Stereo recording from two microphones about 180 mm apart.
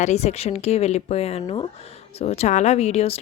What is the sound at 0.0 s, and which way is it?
Speech, 40° left (ahead or behind).